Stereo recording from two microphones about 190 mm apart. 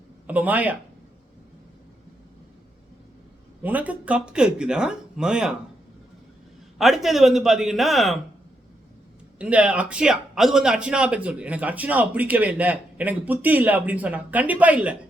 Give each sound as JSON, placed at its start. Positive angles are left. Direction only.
{"t": 0.3, "sound": "speech", "side_deg": -10}
{"t": 3.6, "sound": "speech", "side_deg": -10}
{"t": 6.7, "sound": "speech", "side_deg": 0}
{"t": 9.4, "sound": "speech", "side_deg": -5}